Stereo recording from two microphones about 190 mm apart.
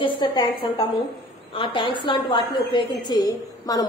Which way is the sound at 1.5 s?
25° left (ahead or behind).